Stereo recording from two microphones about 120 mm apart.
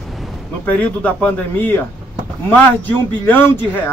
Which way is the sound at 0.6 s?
15° left (ahead or behind).